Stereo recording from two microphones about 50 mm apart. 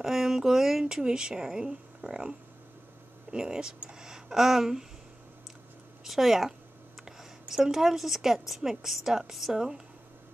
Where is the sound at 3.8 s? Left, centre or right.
Centre.